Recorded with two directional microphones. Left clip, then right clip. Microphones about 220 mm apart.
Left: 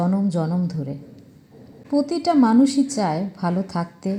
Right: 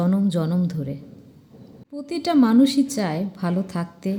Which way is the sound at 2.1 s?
10° right (ahead or behind).